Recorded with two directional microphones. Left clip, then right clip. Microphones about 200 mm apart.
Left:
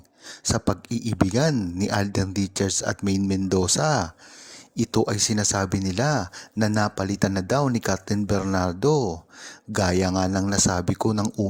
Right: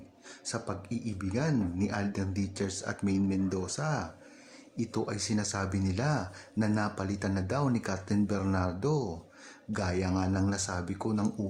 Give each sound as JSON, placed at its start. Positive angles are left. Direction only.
{"t": 0.3, "sound": "speech", "side_deg": 40}